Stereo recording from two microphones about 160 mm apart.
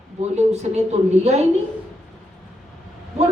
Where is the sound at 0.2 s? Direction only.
45° right (ahead or behind).